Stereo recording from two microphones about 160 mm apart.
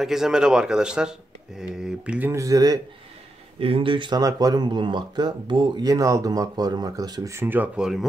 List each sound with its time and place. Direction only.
0.0 s speech: 5° right (ahead or behind); by 2.8 s 25° right (ahead or behind)
3.5 s speech: 35° right (ahead or behind); by 8.1 s centre (ahead or behind)